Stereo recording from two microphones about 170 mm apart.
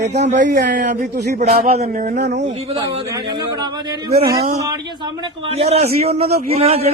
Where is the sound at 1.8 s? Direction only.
45° right (ahead or behind).